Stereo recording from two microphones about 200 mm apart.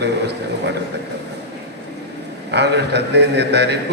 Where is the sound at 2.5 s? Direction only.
55° right (ahead or behind).